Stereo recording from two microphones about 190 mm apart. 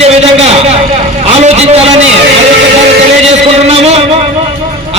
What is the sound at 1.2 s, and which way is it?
Vehicle, 35° right (ahead or behind).